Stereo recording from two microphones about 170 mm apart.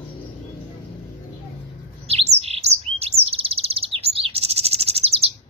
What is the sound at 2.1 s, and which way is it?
Bird, 35° right (ahead or behind).